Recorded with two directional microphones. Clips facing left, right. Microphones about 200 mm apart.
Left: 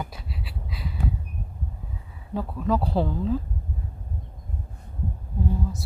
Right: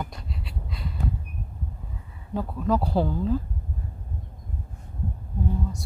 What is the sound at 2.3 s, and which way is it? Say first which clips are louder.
Speech: even; centre (ahead or behind).